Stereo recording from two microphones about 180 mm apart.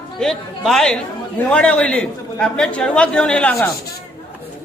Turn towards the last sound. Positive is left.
turn(degrees=5)  # may be behind; listen again after turning